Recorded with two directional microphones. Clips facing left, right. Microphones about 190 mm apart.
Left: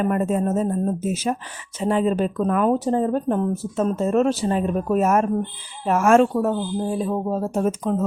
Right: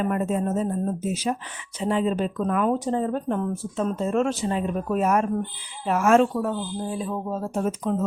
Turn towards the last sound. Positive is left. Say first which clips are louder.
# left 3 dB
turn(degrees=45)  # may be behind; listen again after turning